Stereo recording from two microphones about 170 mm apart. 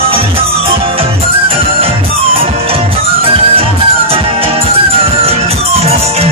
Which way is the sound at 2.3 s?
35° right (ahead or behind).